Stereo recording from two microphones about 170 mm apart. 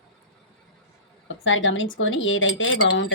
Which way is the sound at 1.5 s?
90° left.